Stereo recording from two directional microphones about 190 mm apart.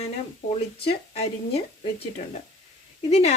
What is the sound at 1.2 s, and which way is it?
Speech, 35° left (ahead or behind).